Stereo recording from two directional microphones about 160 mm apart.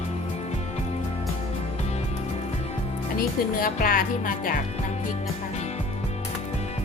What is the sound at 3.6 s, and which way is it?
Music, 60° left (ahead or behind).